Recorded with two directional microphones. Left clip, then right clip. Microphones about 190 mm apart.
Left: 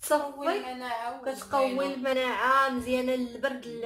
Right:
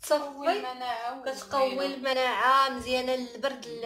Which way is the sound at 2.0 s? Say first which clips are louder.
Right 2 dB; centre (ahead or behind).